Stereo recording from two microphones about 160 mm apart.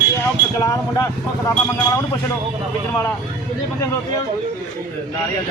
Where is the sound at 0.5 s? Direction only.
20° left (ahead or behind).